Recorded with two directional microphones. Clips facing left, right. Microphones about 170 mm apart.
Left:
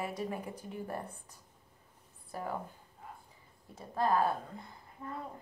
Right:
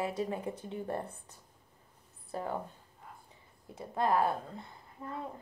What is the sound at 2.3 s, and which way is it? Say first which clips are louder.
Speech: right 3 dB; 25° right (ahead or behind).